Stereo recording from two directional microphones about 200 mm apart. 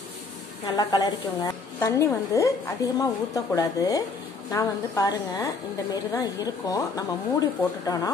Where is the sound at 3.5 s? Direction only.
15° left (ahead or behind).